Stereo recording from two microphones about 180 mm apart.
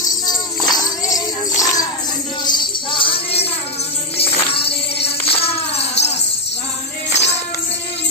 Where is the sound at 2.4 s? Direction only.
25° left (ahead or behind).